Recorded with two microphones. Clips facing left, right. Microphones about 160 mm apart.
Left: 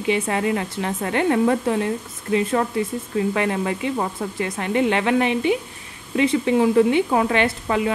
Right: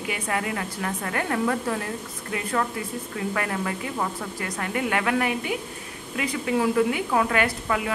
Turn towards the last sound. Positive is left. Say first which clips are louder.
# left 4 dB
turn(degrees=25)  # may be behind; listen again after turning